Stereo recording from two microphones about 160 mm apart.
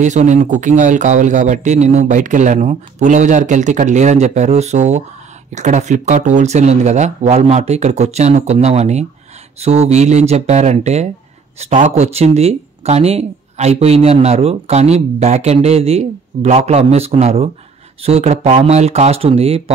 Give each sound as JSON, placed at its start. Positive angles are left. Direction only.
{"t": 0.0, "sound": "a man's voice", "side_deg": -50}